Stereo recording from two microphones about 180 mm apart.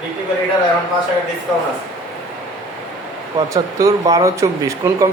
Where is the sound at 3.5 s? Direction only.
20° right (ahead or behind).